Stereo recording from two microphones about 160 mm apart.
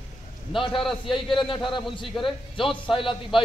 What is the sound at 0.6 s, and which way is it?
A man's voice, 30° left (ahead or behind).